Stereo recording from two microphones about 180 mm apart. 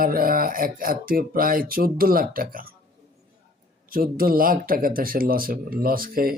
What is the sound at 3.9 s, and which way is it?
Speech, 55° right (ahead or behind).